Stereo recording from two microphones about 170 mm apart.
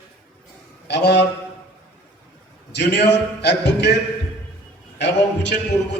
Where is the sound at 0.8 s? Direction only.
85° left.